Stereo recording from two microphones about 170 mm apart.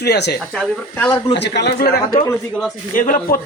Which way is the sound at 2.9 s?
55° left (ahead or behind).